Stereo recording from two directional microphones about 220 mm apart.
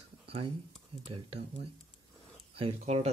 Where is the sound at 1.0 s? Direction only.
25° right (ahead or behind).